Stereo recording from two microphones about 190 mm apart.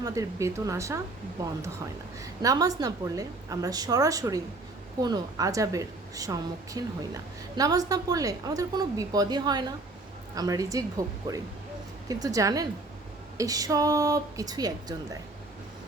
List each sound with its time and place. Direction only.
0.0 s a woman's voice: 15° right (ahead or behind)